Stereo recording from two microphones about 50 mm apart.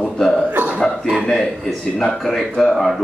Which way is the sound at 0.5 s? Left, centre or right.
Right.